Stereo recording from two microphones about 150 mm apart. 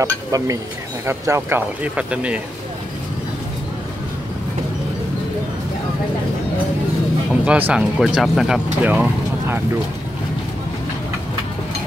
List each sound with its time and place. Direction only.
0.0 s speech: 20° right (ahead or behind)
7.4 s speech: 10° right (ahead or behind)